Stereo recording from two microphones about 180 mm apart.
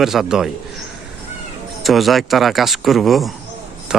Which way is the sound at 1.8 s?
Centre (ahead or behind).